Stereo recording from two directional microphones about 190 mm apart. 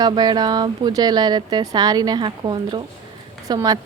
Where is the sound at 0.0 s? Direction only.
20° right (ahead or behind).